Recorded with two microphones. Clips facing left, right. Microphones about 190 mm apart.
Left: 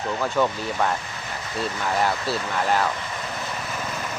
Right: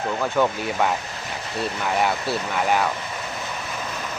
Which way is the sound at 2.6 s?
5° right (ahead or behind).